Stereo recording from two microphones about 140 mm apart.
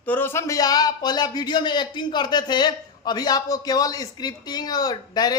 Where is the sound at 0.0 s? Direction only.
15° left (ahead or behind).